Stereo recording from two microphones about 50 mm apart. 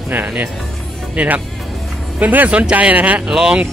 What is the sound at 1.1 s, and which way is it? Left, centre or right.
Speech, right.